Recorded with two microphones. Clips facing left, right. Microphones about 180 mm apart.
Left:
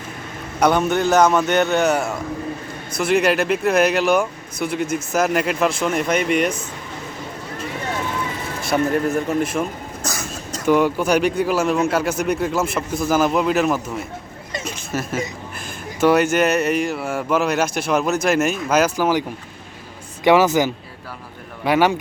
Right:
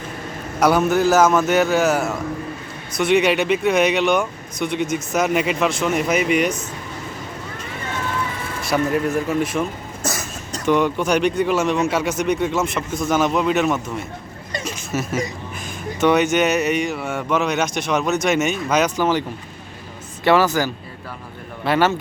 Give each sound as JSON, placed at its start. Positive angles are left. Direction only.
{"t": 0.6, "sound": "a man's voice", "side_deg": -5}
{"t": 8.6, "sound": "a man's voice", "side_deg": 0}
{"t": 20.2, "sound": "speech", "side_deg": 15}